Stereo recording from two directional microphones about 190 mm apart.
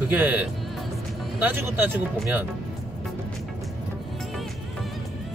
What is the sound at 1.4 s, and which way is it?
Speech, 10° right (ahead or behind).